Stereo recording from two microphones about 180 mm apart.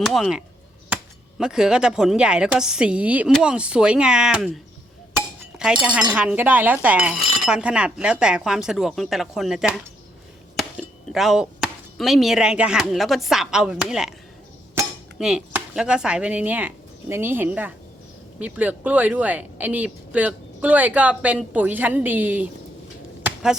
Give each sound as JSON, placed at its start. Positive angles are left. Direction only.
{"t": 0.0, "sound": "speech", "side_deg": 0}
{"t": 15.2, "sound": "speech", "side_deg": -5}
{"t": 23.2, "sound": "chop", "side_deg": -5}